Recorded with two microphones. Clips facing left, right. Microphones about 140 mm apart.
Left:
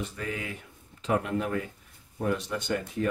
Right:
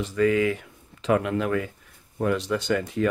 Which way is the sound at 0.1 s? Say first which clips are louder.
Right 14 dB; 90° right.